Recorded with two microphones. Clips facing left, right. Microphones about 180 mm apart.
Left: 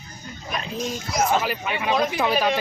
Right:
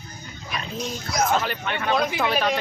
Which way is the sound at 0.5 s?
50° left (ahead or behind).